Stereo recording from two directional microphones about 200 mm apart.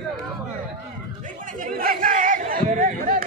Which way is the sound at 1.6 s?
45° right (ahead or behind).